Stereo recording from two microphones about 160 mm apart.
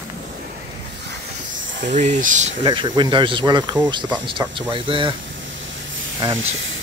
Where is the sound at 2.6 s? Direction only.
30° right (ahead or behind).